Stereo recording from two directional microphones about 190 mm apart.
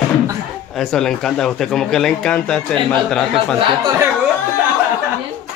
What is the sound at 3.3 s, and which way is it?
Speech, 20° right (ahead or behind).